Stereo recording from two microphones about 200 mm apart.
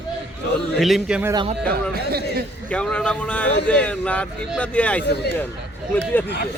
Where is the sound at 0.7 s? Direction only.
Centre (ahead or behind).